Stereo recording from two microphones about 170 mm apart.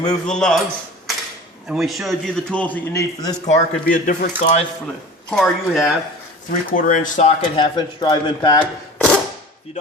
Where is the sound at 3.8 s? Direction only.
55° left (ahead or behind).